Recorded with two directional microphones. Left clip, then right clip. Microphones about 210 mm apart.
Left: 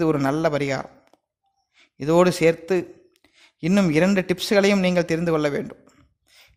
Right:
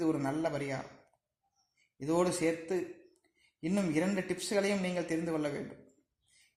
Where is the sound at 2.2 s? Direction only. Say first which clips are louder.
Left 14 dB; 35° left (ahead or behind).